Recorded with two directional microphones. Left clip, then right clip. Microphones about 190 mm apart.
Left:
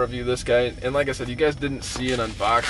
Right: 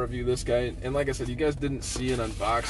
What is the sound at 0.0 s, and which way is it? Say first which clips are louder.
Speech: left 5 dB; 10° left (ahead or behind).